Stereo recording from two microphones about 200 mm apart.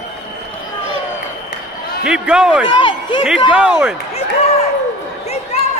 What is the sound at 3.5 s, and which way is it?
Speech, 5° right (ahead or behind).